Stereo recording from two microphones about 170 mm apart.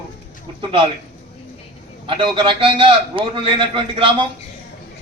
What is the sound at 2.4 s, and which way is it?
A man's voice, 30° right (ahead or behind).